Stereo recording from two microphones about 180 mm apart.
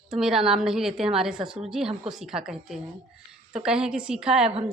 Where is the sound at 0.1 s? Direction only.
Centre (ahead or behind).